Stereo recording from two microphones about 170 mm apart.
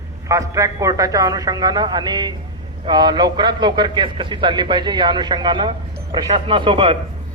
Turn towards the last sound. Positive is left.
turn(degrees=-30)  # may be behind; listen again after turning